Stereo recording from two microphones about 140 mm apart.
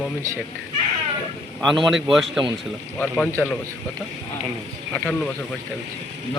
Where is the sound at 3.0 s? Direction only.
10° left (ahead or behind).